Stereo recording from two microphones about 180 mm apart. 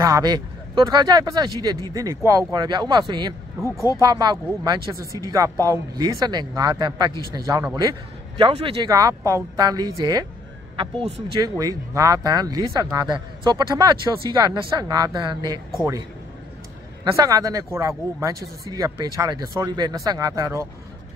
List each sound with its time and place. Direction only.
0.0 s speech: 20° right (ahead or behind)
11.5 s speech: 20° right (ahead or behind)
17.1 s speech: 20° right (ahead or behind)